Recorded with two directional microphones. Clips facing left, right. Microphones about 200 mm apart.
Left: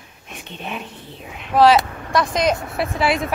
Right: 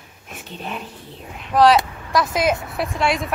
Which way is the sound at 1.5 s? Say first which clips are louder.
Left 1 dB; centre (ahead or behind).